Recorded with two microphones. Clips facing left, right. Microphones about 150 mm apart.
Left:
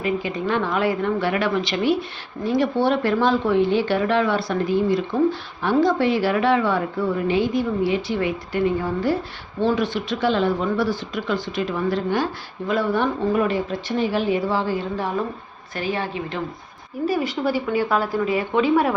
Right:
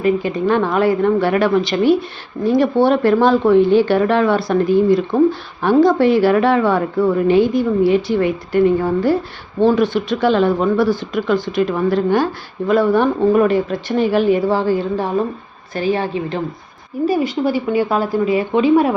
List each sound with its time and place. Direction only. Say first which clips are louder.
0.0 s a woman's voice: right 7 dB; 45° right (ahead or behind); by 18.9 s 20° right (ahead or behind)